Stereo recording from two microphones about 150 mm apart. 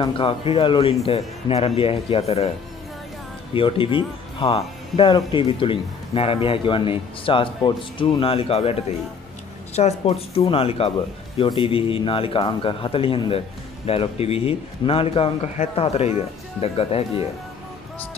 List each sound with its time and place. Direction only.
0.0 s speech: 35° left (ahead or behind)
3.5 s speech: 35° left (ahead or behind)
9.8 s speech: 45° left (ahead or behind)